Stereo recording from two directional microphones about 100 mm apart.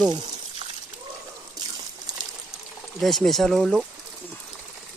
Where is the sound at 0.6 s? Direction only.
90° right.